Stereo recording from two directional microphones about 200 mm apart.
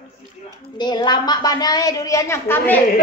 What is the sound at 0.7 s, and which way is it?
A woman's voice, 20° left (ahead or behind).